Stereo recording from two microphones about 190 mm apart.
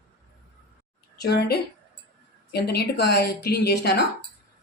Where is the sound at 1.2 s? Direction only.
55° left (ahead or behind).